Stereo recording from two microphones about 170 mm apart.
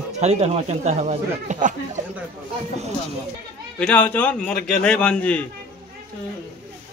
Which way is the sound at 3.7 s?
10° left (ahead or behind).